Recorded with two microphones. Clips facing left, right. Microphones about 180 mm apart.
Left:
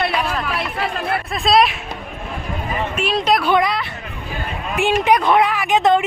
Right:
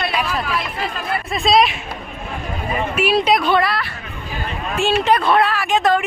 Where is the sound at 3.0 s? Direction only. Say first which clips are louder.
Right 2 dB; 5° right (ahead or behind).